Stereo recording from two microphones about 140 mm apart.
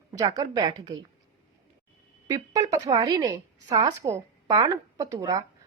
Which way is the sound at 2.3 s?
25° right (ahead or behind).